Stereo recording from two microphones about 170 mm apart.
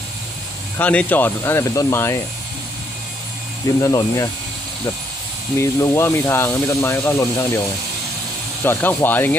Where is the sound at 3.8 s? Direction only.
20° left (ahead or behind).